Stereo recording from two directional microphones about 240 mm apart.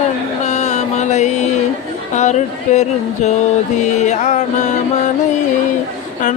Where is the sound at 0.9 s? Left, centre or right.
Left.